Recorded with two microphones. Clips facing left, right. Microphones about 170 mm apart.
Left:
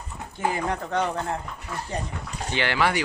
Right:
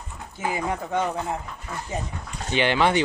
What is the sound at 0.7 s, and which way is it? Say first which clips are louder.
Speech: even; 5° right (ahead or behind).